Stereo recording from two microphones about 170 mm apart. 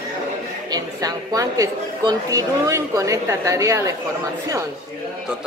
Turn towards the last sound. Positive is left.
turn(degrees=-20)  # may be behind; listen again after turning